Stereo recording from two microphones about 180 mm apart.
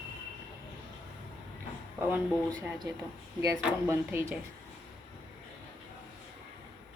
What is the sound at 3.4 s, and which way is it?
Speech, 15° right (ahead or behind).